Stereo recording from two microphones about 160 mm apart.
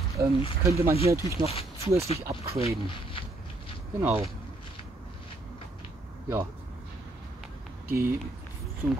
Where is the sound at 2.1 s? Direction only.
40° left (ahead or behind).